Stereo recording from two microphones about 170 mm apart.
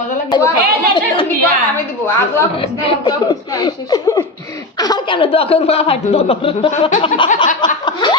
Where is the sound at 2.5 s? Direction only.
30° left (ahead or behind).